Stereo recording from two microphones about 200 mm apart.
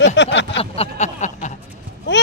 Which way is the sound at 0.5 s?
30° left (ahead or behind).